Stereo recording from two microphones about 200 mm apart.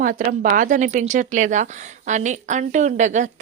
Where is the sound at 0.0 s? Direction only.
40° right (ahead or behind).